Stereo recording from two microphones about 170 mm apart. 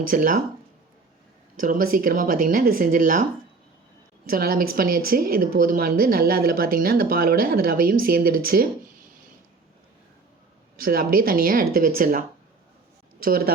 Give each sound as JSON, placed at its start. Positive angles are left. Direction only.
{"t": 0.0, "sound": "speech", "side_deg": -55}
{"t": 1.5, "sound": "speech", "side_deg": -50}
{"t": 4.3, "sound": "speech", "side_deg": -60}
{"t": 10.8, "sound": "speech", "side_deg": -60}
{"t": 13.2, "sound": "speech", "side_deg": -60}